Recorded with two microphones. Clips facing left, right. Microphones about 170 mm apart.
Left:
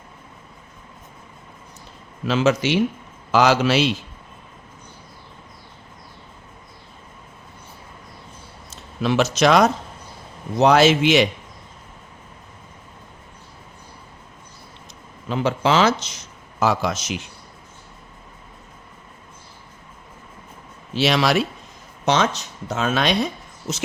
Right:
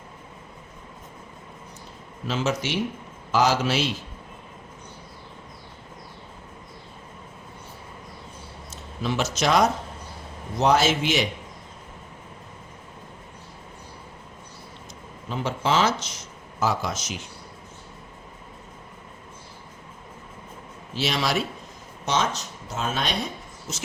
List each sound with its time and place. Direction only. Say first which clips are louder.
2.2 s a man's voice: left 7 dB; 85° left
9.0 s a man's voice: left 7 dB; 75° left (ahead or behind)
15.3 s speech: left 5 dB; 90° left
16.6 s speech: left 5 dB; 80° left
20.9 s a man's voice: left 7 dB; 80° left